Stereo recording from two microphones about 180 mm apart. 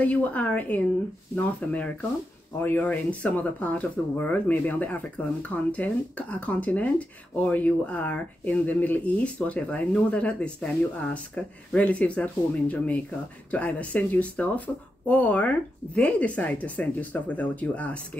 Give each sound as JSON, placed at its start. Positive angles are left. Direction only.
{"t": 0.0, "sound": "speech", "side_deg": 10}